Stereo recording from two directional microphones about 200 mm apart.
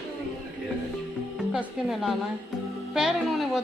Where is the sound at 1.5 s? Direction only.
Centre (ahead or behind).